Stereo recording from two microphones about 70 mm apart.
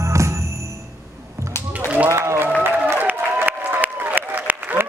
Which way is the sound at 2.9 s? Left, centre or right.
Right.